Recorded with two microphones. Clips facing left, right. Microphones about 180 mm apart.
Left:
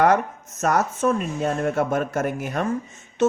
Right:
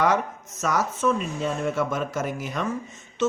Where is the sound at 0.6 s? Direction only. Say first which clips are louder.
Left 3 dB; 55° left (ahead or behind).